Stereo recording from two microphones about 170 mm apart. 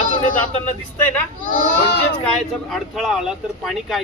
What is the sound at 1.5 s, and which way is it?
Speech, 55° left (ahead or behind).